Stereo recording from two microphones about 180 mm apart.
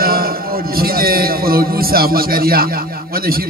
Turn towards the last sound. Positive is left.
turn(degrees=-55)  # may be behind; listen again after turning